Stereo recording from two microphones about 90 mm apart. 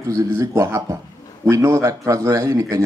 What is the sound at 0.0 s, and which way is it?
A man's voice, 35° right (ahead or behind).